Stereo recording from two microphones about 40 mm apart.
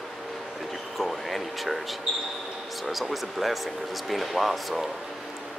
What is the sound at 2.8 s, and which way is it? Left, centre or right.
Speech, centre.